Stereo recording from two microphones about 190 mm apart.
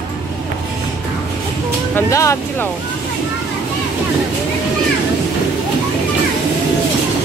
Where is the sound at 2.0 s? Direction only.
15° left (ahead or behind).